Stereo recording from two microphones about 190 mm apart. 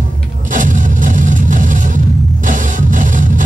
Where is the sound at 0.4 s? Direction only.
40° right (ahead or behind).